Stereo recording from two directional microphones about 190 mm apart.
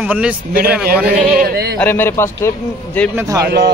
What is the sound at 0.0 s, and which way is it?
Speech, 10° right (ahead or behind).